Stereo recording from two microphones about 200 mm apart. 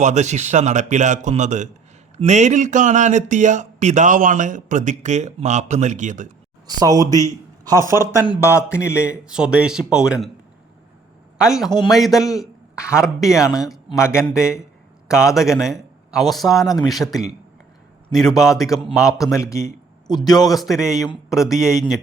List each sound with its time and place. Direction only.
0.0 s speech: 35° right (ahead or behind)
6.7 s speech: 20° right (ahead or behind); by 10.2 s 5° right (ahead or behind)
11.3 s a man's voice: 5° right (ahead or behind)
12.2 s a man's voice: 15° left (ahead or behind)
12.7 s speech: 5° right (ahead or behind)
14.2 s a man's voice: 15° left (ahead or behind)
15.0 s a man's voice: 5° right (ahead or behind)
19.5 s a man's voice: 15° left (ahead or behind)
20.4 s speech: centre (ahead or behind)